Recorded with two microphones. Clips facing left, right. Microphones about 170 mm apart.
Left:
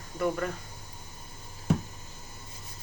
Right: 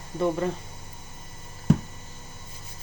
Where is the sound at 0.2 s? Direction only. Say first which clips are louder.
Right 4 dB; 25° right (ahead or behind).